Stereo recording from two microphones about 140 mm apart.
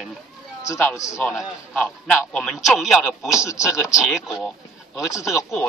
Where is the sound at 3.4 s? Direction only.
20° left (ahead or behind).